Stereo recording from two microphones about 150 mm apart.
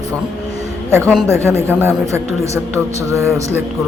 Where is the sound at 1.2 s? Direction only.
15° right (ahead or behind).